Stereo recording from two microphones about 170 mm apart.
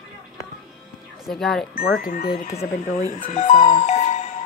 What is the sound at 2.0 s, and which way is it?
Speech, 60° left (ahead or behind).